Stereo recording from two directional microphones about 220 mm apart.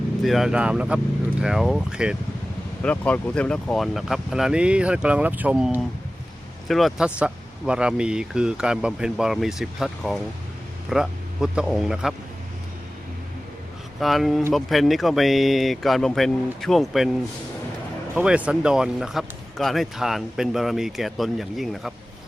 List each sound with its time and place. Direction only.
0.3 s speech: centre (ahead or behind)
14.0 s speech: centre (ahead or behind)
18.1 s speech: 5° right (ahead or behind)